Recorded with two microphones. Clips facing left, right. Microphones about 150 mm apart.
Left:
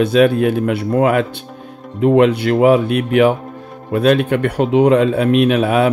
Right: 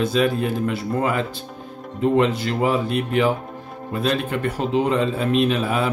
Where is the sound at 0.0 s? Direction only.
65° left (ahead or behind).